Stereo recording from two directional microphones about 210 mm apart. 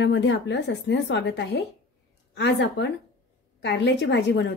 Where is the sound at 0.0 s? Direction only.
55° left (ahead or behind).